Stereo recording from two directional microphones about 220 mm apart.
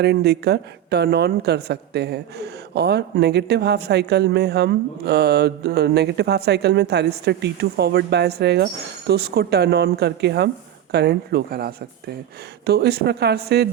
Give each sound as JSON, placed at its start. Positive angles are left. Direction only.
{"t": 0.0, "sound": "a woman's voice", "side_deg": -50}